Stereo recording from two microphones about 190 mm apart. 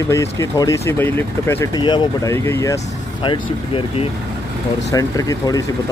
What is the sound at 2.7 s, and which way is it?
Speech, 30° left (ahead or behind).